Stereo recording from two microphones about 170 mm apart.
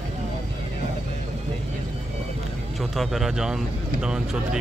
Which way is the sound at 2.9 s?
Centre (ahead or behind).